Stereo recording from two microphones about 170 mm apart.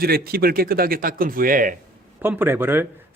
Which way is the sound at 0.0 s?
65° right (ahead or behind).